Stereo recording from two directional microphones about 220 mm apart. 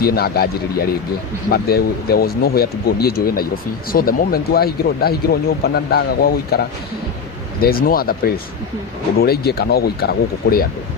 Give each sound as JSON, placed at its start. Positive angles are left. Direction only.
{"t": 0.0, "sound": "speech", "side_deg": 45}